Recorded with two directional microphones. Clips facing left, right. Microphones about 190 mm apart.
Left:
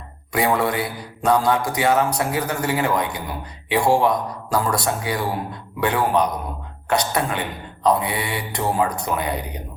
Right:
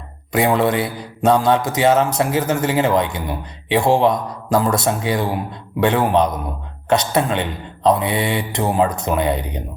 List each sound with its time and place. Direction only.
0.3 s a man's voice: 20° right (ahead or behind)